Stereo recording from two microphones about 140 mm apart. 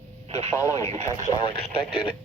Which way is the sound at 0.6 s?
20° left (ahead or behind).